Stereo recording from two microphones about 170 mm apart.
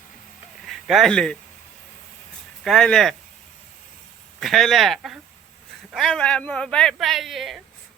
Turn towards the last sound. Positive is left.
turn(degrees=0)  # may be behind; listen again after turning